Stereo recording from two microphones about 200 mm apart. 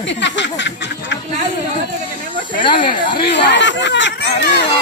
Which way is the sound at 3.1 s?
55° left (ahead or behind).